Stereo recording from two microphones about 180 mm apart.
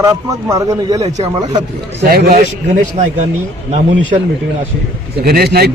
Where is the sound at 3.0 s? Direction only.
40° right (ahead or behind).